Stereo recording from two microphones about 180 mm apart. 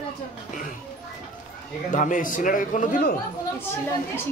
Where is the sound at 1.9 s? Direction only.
45° left (ahead or behind).